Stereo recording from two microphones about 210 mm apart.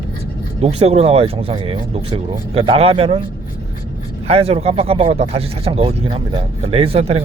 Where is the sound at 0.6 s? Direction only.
30° right (ahead or behind).